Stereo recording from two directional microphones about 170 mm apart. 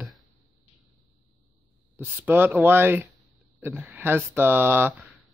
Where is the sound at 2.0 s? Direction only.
10° right (ahead or behind).